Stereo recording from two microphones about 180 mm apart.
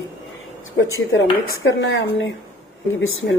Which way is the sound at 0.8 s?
90° left.